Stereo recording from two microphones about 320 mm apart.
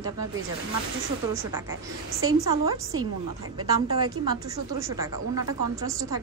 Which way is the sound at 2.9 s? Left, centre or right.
Right.